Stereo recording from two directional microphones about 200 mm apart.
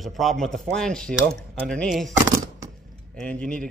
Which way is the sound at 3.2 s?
5° left (ahead or behind).